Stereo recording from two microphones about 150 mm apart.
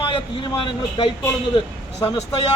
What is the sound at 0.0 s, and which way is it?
Speech, 35° left (ahead or behind).